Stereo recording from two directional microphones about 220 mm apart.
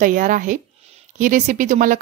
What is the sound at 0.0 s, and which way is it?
Speech, 35° right (ahead or behind).